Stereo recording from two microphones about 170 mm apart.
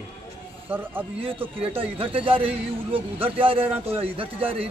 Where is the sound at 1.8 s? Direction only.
35° right (ahead or behind).